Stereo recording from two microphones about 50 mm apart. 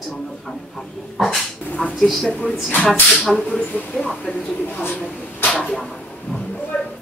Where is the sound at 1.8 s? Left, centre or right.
Centre.